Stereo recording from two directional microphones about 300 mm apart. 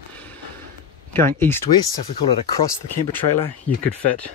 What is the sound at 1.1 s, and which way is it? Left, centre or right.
Speech, centre.